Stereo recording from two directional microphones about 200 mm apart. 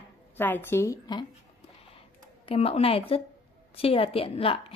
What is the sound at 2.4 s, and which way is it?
Speech, 30° left (ahead or behind).